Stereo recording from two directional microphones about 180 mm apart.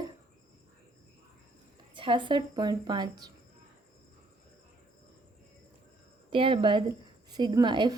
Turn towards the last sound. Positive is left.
turn(degrees=-25)  # may be behind; listen again after turning